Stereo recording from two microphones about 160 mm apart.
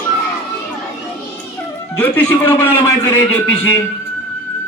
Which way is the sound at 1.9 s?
15° left (ahead or behind).